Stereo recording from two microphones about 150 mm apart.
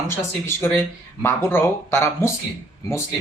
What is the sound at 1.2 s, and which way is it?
Speech, 15° left (ahead or behind).